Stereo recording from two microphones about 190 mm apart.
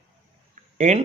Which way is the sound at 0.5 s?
40° right (ahead or behind).